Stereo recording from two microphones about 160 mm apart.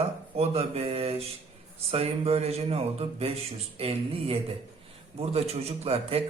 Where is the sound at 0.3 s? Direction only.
40° right (ahead or behind).